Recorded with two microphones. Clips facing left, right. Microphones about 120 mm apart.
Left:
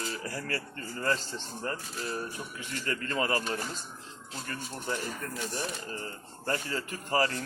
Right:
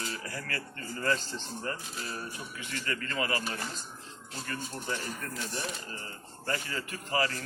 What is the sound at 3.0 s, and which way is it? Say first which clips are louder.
Speech: left 4 dB; 30° left (ahead or behind).